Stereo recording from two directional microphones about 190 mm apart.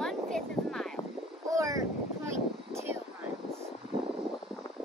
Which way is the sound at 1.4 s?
15° right (ahead or behind).